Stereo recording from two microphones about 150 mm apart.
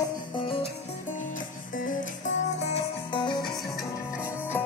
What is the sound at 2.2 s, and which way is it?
Music, 55° left (ahead or behind).